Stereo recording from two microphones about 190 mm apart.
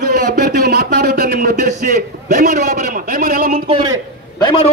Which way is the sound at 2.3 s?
40° right (ahead or behind).